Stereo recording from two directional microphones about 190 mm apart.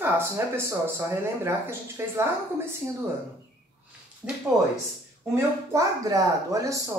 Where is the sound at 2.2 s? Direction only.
15° right (ahead or behind).